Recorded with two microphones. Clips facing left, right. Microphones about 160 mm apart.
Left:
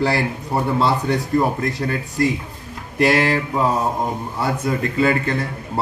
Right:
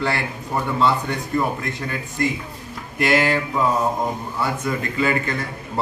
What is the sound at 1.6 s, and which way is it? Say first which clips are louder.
Speech: left 5 dB; 35° left (ahead or behind).